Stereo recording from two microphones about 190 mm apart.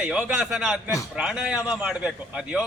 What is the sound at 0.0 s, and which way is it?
A man's voice, 5° right (ahead or behind).